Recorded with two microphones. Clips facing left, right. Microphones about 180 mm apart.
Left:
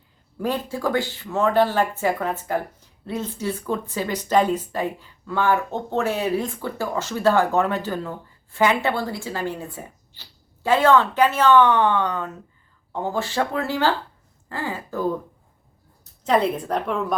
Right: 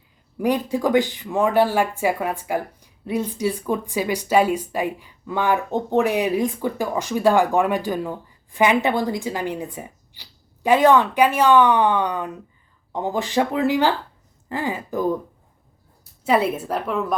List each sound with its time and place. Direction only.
0.3 s speech: 15° right (ahead or behind)
16.2 s a woman's voice: 5° right (ahead or behind)